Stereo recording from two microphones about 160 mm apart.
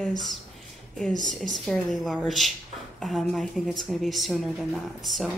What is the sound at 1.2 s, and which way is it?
Speech, centre (ahead or behind).